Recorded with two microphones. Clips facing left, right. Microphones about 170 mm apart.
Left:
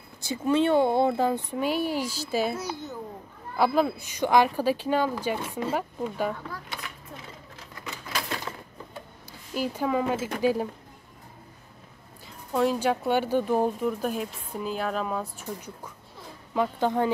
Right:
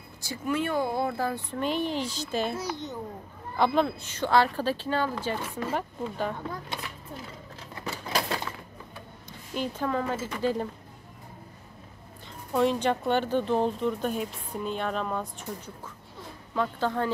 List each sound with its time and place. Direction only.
0.2 s speech: 25° left (ahead or behind)
1.6 s speech: 10° left (ahead or behind)
7.7 s typewriter: 35° right (ahead or behind)
9.5 s speech: 10° left (ahead or behind)
12.5 s speech: 5° left (ahead or behind)